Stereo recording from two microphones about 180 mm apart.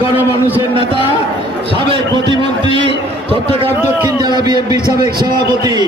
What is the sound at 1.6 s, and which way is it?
A man's voice, 30° right (ahead or behind).